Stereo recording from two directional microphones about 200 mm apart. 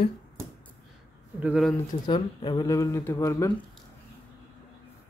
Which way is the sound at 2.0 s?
20° left (ahead or behind).